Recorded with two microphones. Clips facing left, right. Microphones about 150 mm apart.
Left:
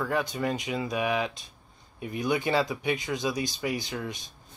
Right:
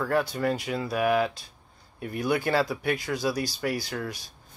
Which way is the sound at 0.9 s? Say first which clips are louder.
Right 6 dB; 5° right (ahead or behind).